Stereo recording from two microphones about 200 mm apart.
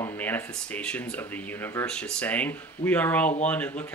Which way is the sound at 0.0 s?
10° left (ahead or behind).